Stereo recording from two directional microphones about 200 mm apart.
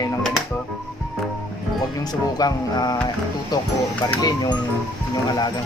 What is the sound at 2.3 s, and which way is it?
Speech, 20° left (ahead or behind).